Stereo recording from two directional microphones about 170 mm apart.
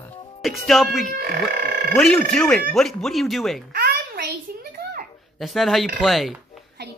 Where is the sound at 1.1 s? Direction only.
60° right (ahead or behind).